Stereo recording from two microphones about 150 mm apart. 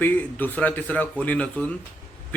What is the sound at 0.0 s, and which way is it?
Speech, 10° left (ahead or behind).